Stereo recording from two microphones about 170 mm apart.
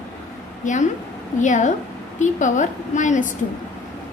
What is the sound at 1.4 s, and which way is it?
A woman's voice, 45° left (ahead or behind).